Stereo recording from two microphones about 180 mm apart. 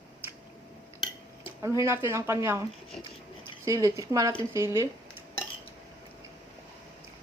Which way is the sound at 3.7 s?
20° right (ahead or behind).